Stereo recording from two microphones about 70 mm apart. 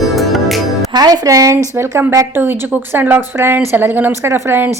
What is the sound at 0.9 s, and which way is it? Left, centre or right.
Speech, right.